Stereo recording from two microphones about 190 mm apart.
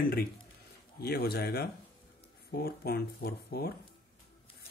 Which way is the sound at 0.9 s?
55° left (ahead or behind).